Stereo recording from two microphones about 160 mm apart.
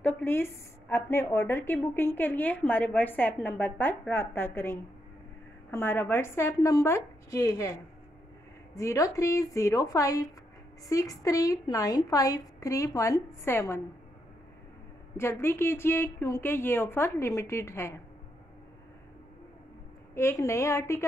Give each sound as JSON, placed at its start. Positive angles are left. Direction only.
{"t": 0.0, "sound": "a woman's voice", "side_deg": 10}
{"t": 8.7, "sound": "a woman's voice", "side_deg": 20}
{"t": 15.1, "sound": "a woman's voice", "side_deg": 15}
{"t": 20.2, "sound": "a woman's voice", "side_deg": 15}